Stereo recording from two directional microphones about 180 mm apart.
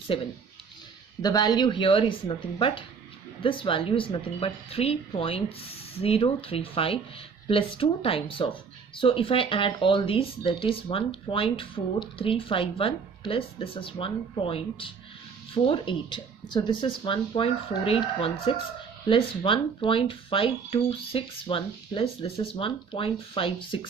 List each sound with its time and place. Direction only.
1.2 s a woman's voice: 20° left (ahead or behind)